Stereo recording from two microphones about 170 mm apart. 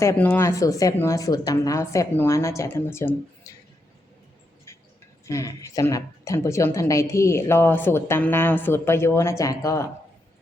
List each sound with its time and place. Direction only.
0.0 s a woman's voice: 15° left (ahead or behind)
5.2 s a woman's voice: 20° left (ahead or behind)